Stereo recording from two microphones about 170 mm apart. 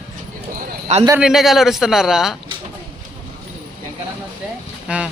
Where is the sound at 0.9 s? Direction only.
40° right (ahead or behind).